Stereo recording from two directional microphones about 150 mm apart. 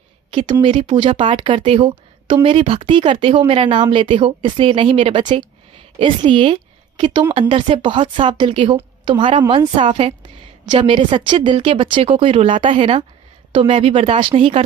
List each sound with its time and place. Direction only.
0.3 s a woman's voice: 30° right (ahead or behind)